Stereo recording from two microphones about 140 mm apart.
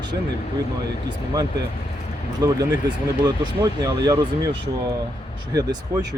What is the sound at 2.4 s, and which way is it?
Speech, 25° right (ahead or behind).